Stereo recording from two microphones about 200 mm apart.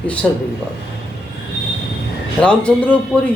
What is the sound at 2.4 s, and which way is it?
Speech, 5° left (ahead or behind).